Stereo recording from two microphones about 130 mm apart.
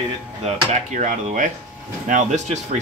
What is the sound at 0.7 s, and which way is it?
Speech, 70° right (ahead or behind).